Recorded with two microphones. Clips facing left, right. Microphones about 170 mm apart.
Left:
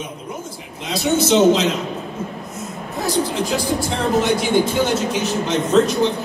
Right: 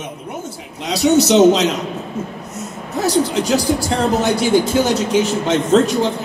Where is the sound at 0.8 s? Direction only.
70° right (ahead or behind).